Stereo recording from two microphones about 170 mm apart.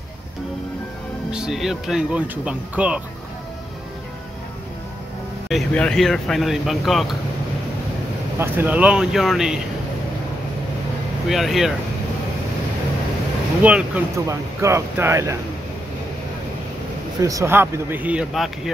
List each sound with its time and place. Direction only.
1.3 s speech: 5° right (ahead or behind)
5.5 s speech: 5° left (ahead or behind)
8.4 s speech: 10° right (ahead or behind)
11.2 s speech: centre (ahead or behind)
13.6 s speech: 10° right (ahead or behind)
17.2 s speech: 20° right (ahead or behind); by 18.7 s centre (ahead or behind)